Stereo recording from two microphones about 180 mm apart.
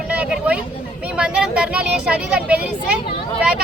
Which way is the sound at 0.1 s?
5° right (ahead or behind).